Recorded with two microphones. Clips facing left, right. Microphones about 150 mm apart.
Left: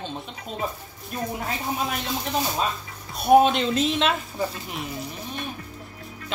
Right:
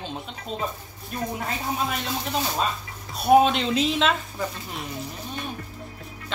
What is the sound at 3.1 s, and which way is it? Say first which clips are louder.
Speech: left 1 dB; centre (ahead or behind).